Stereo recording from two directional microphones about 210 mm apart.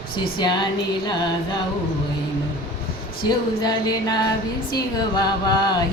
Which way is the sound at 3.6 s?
20° left (ahead or behind).